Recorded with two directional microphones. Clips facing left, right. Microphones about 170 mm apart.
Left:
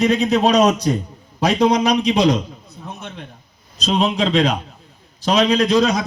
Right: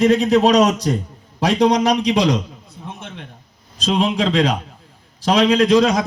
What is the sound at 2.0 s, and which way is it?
Speech, 85° right.